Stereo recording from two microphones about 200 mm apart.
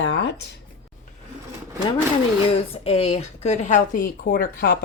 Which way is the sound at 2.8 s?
30° left (ahead or behind).